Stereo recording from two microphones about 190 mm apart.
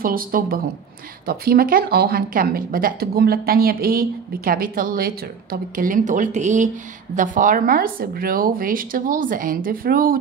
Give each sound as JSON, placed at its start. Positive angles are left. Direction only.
{"t": 0.0, "sound": "speech", "side_deg": -50}